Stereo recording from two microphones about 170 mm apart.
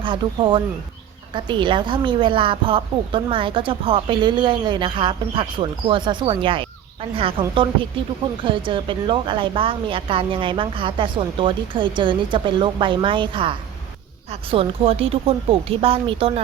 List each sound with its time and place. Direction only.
0.0 s a woman's voice: 30° right (ahead or behind)